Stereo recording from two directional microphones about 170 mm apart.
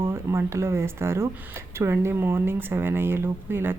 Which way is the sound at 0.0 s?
15° right (ahead or behind).